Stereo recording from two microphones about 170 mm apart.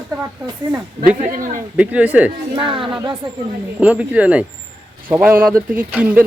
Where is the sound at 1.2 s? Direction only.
50° right (ahead or behind).